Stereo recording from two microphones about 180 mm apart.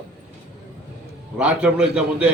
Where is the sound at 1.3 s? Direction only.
5° right (ahead or behind).